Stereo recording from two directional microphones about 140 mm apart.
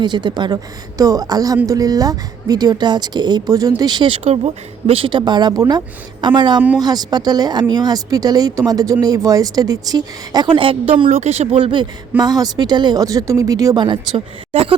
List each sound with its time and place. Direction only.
0.0 s speech: 30° right (ahead or behind)
4.2 s speech: 50° right (ahead or behind)
11.2 s speech: 50° right (ahead or behind)